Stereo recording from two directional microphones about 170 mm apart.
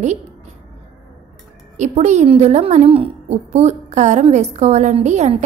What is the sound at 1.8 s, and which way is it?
A woman's voice, 45° right (ahead or behind).